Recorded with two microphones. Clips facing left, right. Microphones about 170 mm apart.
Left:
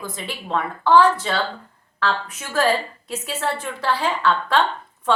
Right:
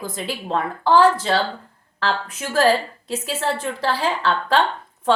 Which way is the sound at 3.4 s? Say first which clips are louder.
Right 2 dB; 35° right (ahead or behind).